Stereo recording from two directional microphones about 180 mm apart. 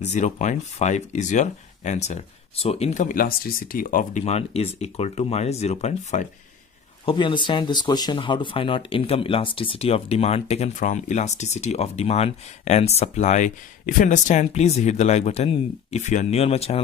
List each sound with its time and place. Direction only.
0.0 s speech: 40° left (ahead or behind)
7.1 s speech: 25° left (ahead or behind)